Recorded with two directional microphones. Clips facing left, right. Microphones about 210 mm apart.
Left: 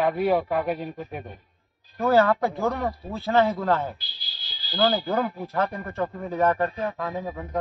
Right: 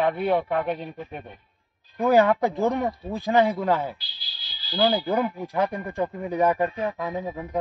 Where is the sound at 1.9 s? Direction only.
15° right (ahead or behind).